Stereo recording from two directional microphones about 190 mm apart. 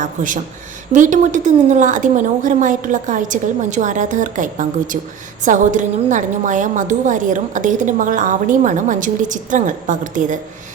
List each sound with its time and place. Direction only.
0.0 s a woman's voice: 45° right (ahead or behind)